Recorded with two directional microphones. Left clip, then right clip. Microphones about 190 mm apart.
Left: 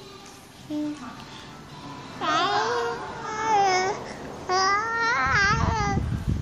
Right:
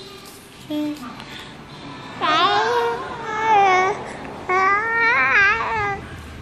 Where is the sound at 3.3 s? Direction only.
15° left (ahead or behind).